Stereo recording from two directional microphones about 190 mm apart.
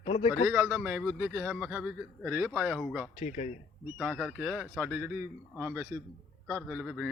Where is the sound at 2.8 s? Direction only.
Centre (ahead or behind).